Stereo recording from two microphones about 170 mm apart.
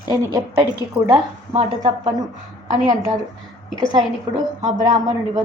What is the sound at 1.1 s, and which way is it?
Speech, 25° right (ahead or behind).